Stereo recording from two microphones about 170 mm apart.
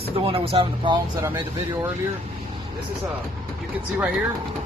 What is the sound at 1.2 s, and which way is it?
Speech, 20° right (ahead or behind).